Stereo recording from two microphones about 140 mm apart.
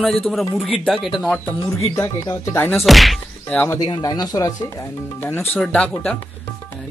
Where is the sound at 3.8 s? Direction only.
30° left (ahead or behind).